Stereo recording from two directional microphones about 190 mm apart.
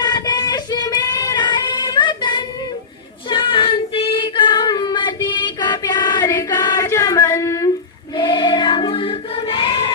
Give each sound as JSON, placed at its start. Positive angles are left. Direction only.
{"t": 0.0, "sound": "child singing", "side_deg": 20}
{"t": 8.1, "sound": "choir", "side_deg": 25}